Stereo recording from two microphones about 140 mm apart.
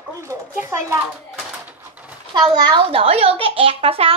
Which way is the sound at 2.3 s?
30° right (ahead or behind).